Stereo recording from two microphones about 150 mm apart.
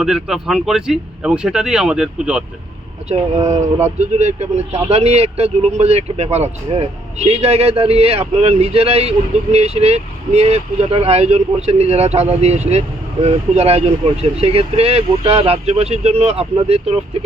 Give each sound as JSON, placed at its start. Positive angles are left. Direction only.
{"t": 0.0, "sound": "speech", "side_deg": -5}
{"t": 3.9, "sound": "speech", "side_deg": -50}